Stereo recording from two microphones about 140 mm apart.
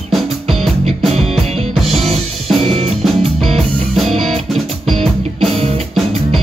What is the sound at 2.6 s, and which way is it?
Music, 45° right (ahead or behind).